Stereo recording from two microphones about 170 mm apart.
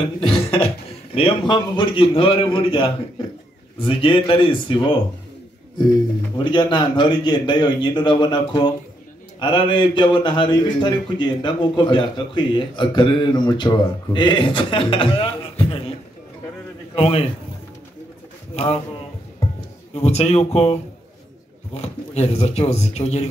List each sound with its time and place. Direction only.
0.0 s a man's voice: 35° left (ahead or behind)
6.3 s a man's voice: 30° left (ahead or behind)
16.9 s a man's voice: 35° left (ahead or behind)
19.9 s a man's voice: 40° left (ahead or behind)